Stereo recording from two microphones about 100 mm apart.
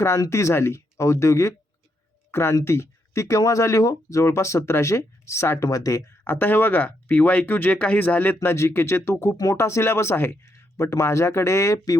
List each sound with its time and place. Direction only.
0.2 s speech: 30° left (ahead or behind)
6.2 s speech: 20° left (ahead or behind)